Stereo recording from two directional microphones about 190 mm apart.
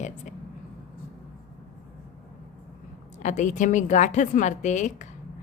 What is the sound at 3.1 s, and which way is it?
Speech, 40° left (ahead or behind).